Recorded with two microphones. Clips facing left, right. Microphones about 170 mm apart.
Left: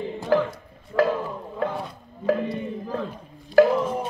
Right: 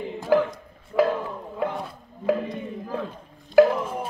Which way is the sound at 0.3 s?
10° right (ahead or behind).